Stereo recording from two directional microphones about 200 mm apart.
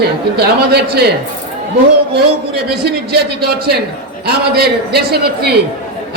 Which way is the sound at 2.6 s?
55° right (ahead or behind).